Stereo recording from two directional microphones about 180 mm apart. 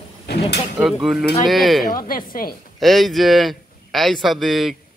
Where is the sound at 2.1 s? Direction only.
55° left (ahead or behind).